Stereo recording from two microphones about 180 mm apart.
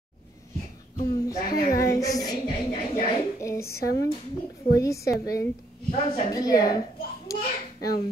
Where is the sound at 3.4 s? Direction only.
15° left (ahead or behind).